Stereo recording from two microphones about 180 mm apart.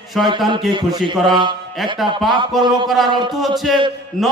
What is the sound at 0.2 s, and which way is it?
Speech, centre (ahead or behind).